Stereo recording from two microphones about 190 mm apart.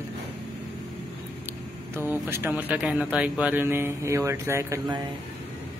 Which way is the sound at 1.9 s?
10° right (ahead or behind).